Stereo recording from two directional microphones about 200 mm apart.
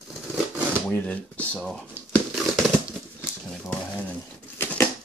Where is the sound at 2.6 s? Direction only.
Centre (ahead or behind).